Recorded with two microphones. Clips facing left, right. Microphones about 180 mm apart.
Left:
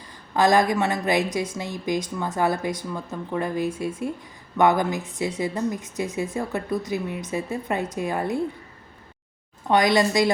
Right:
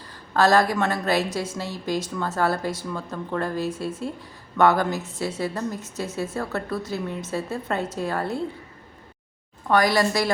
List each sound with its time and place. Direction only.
0.3 s speech: 15° left (ahead or behind)
9.6 s a woman's voice: 20° left (ahead or behind)